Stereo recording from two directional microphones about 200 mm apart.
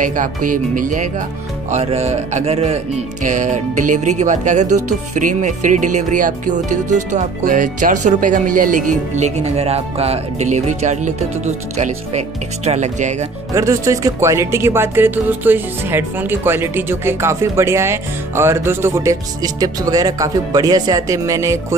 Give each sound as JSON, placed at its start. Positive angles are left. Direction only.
{"t": 0.0, "sound": "music", "side_deg": -40}
{"t": 13.5, "sound": "speech", "side_deg": -15}